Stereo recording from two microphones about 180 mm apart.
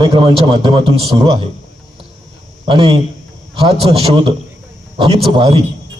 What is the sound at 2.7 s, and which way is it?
A man's voice, 30° right (ahead or behind).